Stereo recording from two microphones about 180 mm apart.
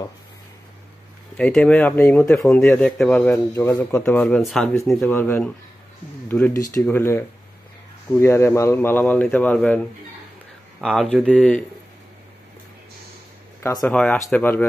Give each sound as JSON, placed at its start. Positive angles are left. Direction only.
{"t": 1.3, "sound": "speech", "side_deg": 5}
{"t": 10.8, "sound": "speech", "side_deg": 0}
{"t": 13.6, "sound": "speech", "side_deg": 15}